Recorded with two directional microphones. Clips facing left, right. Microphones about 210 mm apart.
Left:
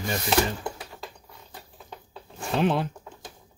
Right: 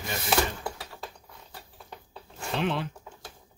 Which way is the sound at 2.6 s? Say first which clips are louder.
Left 5 dB; 40° left (ahead or behind).